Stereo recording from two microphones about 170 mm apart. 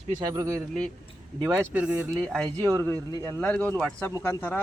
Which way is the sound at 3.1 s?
15° left (ahead or behind).